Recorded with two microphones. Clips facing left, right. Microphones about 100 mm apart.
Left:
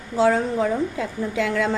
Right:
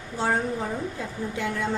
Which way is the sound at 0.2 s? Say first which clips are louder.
Left 7 dB; 90° left.